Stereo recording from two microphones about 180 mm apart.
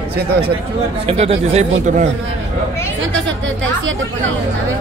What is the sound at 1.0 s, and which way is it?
Speech, 35° right (ahead or behind).